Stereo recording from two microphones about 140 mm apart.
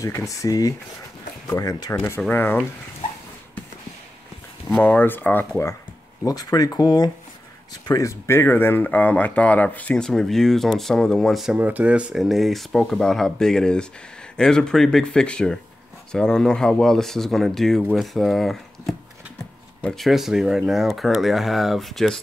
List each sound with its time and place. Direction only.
0.0 s speech: 25° left (ahead or behind)
4.8 s speech: 15° left (ahead or behind)
6.2 s speech: 25° left (ahead or behind); by 22.2 s centre (ahead or behind)